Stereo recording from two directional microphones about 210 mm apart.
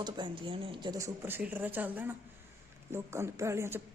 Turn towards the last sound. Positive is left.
turn(degrees=-10)  # may be behind; listen again after turning